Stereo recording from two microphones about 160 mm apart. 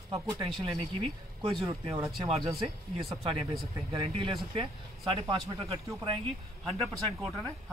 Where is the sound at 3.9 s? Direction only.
35° right (ahead or behind).